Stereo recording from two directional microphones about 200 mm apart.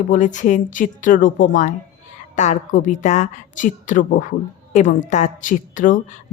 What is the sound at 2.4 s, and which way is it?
Speech, 35° left (ahead or behind).